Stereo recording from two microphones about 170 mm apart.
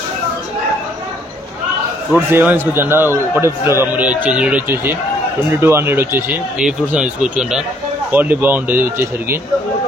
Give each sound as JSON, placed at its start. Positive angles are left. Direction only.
{"t": 2.1, "sound": "a man's voice", "side_deg": -10}